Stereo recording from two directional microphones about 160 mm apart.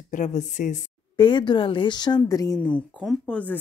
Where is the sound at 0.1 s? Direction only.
50° left (ahead or behind).